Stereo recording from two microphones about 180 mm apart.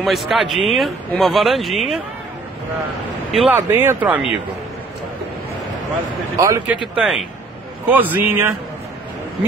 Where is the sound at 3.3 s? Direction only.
Centre (ahead or behind).